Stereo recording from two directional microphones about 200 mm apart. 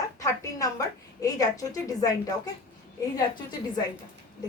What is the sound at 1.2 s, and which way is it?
A woman's voice, 15° left (ahead or behind).